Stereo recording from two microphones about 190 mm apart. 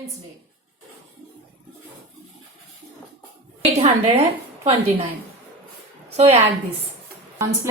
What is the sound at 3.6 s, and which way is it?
Speech, 35° right (ahead or behind).